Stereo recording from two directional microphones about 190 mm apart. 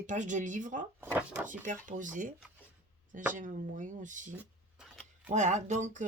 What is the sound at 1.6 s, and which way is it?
Speech, 45° right (ahead or behind).